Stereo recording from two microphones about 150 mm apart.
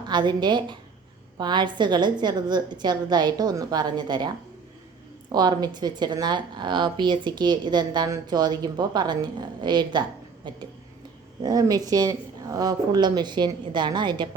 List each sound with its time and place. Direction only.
0.0 s speech: 30° right (ahead or behind)
5.3 s speech: 25° right (ahead or behind)